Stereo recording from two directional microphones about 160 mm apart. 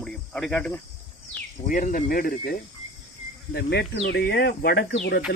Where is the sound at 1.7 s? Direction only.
55° left (ahead or behind).